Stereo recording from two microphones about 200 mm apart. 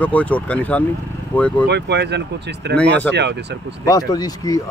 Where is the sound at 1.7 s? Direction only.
60° right (ahead or behind).